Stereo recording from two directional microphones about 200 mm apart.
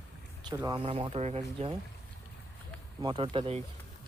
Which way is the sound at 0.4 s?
20° right (ahead or behind).